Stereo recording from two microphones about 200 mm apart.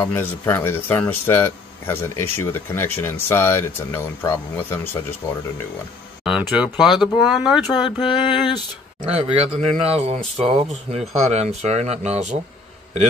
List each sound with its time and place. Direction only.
0.0 s speech: 10° left (ahead or behind)
6.2 s speech: 5° right (ahead or behind)
7.6 s speech: 20° left (ahead or behind)
9.3 s speech: 30° right (ahead or behind)